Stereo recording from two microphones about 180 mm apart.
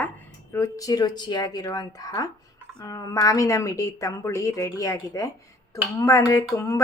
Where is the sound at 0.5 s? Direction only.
15° left (ahead or behind).